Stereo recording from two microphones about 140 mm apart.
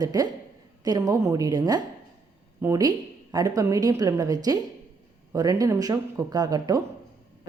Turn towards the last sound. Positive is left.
turn(degrees=-25)  # may be behind; listen again after turning